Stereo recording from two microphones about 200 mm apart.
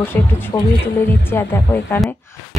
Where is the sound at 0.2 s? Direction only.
10° left (ahead or behind).